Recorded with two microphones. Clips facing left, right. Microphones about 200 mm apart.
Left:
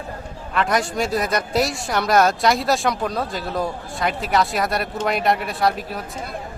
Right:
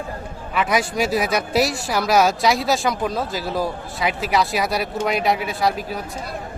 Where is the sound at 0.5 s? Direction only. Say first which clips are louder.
Even; 5° right (ahead or behind).